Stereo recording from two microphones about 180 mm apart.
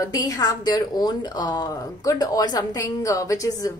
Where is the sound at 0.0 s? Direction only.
20° left (ahead or behind).